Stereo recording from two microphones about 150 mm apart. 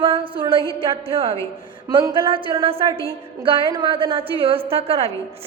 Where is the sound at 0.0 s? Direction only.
40° right (ahead or behind).